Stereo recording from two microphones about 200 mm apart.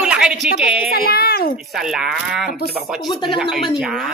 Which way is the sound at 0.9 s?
50° left (ahead or behind).